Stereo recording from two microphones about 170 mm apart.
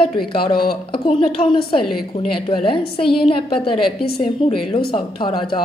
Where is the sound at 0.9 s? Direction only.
30° left (ahead or behind).